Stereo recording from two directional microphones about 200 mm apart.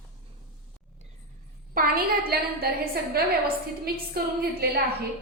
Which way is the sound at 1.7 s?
45° right (ahead or behind).